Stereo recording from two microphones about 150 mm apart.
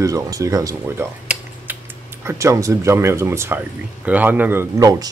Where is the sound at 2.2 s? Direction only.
20° right (ahead or behind).